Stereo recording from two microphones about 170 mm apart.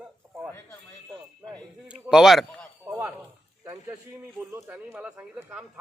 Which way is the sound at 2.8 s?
10° right (ahead or behind).